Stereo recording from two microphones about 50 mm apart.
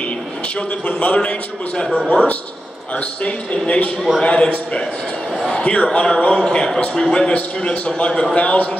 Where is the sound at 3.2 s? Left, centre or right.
Left.